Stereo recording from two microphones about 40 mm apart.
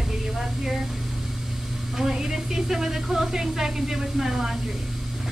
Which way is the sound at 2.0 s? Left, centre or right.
Centre.